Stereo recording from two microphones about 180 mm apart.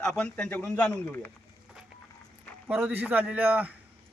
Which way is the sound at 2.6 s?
10° right (ahead or behind).